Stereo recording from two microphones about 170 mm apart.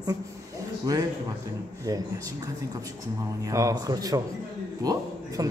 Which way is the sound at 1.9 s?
20° right (ahead or behind).